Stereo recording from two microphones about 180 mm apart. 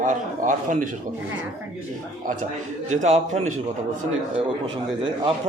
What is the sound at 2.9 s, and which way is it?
Speech, 40° right (ahead or behind).